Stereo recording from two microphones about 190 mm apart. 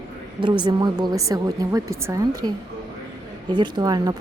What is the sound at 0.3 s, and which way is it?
Speech, 25° right (ahead or behind).